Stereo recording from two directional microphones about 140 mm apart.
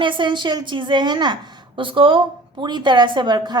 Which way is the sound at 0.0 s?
35° right (ahead or behind).